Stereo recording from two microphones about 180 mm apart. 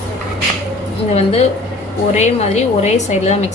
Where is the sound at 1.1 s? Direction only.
35° left (ahead or behind).